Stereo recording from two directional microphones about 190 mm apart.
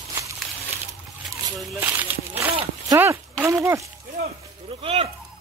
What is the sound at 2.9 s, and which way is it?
Speech, 15° right (ahead or behind).